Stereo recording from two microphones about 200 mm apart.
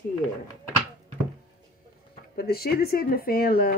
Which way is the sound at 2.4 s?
50° left (ahead or behind).